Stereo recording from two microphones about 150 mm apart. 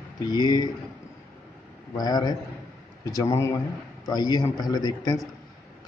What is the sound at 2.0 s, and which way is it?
A man's voice, 25° left (ahead or behind).